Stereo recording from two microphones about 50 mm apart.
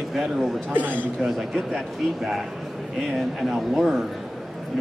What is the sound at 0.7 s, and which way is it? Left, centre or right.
Speech, right.